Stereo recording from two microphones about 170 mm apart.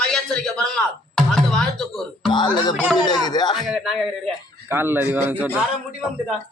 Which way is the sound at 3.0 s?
25° left (ahead or behind).